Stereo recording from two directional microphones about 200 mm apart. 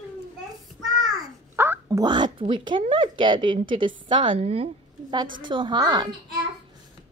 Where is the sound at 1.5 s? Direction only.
10° right (ahead or behind).